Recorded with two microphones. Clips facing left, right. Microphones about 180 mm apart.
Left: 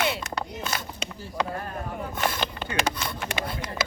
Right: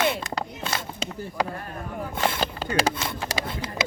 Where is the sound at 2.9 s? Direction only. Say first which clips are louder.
Right 1 dB; 25° right (ahead or behind).